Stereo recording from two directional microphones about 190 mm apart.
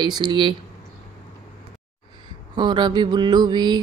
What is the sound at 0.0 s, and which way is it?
Speech, 25° right (ahead or behind).